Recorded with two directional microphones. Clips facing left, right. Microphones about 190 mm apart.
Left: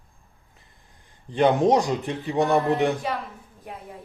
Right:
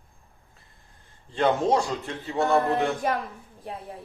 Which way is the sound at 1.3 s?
15° left (ahead or behind).